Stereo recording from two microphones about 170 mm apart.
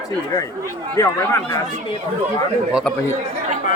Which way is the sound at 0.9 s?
15° left (ahead or behind).